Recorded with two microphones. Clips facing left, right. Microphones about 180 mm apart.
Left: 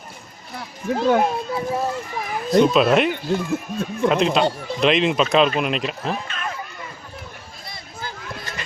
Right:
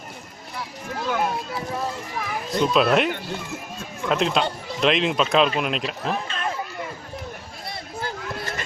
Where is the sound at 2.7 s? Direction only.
Centre (ahead or behind).